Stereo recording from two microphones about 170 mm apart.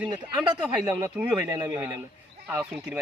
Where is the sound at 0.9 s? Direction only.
15° right (ahead or behind).